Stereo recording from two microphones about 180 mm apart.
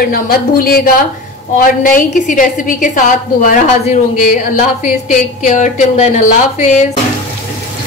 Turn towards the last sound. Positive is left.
turn(degrees=40)  # may be behind; listen again after turning